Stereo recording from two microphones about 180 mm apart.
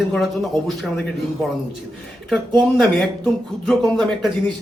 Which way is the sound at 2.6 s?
5° left (ahead or behind).